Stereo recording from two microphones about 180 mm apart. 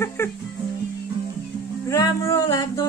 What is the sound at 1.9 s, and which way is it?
Music, 20° left (ahead or behind).